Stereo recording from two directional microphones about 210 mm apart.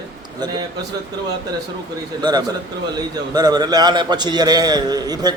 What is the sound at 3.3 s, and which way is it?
A man's voice, 20° right (ahead or behind).